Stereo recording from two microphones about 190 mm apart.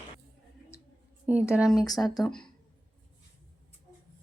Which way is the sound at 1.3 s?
5° right (ahead or behind).